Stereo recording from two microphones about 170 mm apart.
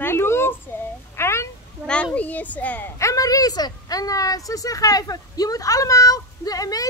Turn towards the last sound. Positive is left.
turn(degrees=20)  # may be behind; listen again after turning